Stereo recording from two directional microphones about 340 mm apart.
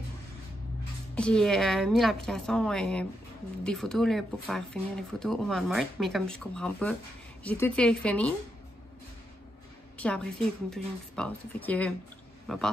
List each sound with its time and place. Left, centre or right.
1.1 s speech: centre
9.9 s speech: centre